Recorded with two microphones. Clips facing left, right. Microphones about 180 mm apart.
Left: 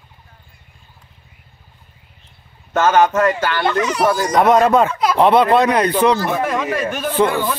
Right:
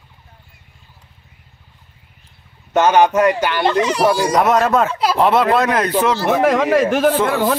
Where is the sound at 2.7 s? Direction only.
15° right (ahead or behind).